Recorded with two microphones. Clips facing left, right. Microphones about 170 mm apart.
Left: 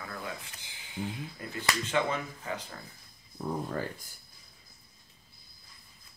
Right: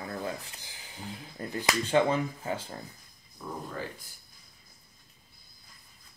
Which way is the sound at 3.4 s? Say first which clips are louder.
Left 5 dB; 40° left (ahead or behind).